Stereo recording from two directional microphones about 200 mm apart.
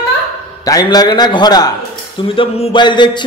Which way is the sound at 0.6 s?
20° left (ahead or behind).